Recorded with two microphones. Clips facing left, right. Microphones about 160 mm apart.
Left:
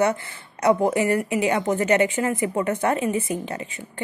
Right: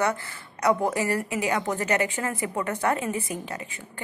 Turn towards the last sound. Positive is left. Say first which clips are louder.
# left 5 dB
turn(degrees=25)  # may be behind; listen again after turning